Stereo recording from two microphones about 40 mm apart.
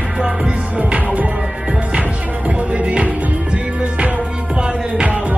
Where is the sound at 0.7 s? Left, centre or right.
Right.